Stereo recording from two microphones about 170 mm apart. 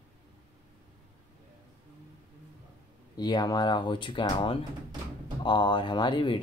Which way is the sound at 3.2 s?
25° left (ahead or behind).